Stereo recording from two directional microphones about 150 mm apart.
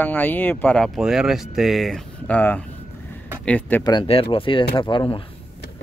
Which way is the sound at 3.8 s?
35° left (ahead or behind).